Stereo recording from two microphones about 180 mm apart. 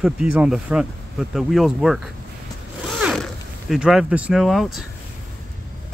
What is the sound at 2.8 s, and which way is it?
Zipper, centre (ahead or behind).